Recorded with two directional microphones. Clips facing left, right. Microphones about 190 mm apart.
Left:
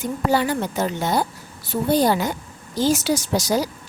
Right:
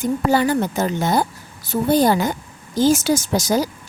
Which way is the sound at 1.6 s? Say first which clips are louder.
Right 2 dB; 45° right (ahead or behind).